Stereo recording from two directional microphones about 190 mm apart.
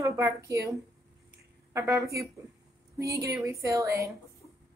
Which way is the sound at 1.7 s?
15° right (ahead or behind).